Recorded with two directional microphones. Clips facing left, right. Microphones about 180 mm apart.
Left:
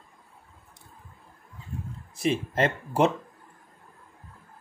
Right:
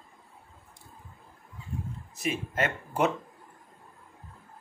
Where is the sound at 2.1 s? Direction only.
30° left (ahead or behind).